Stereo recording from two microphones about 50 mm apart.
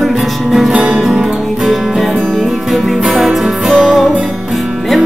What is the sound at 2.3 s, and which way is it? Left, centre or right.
Music, centre.